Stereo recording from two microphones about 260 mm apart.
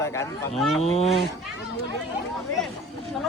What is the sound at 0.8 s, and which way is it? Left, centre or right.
Speech, left.